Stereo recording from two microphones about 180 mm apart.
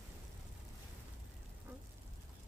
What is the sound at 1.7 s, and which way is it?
Duck, 10° right (ahead or behind).